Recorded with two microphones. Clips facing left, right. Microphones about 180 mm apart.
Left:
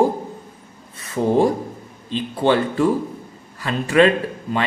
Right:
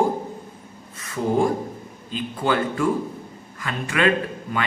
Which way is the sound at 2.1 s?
30° left (ahead or behind).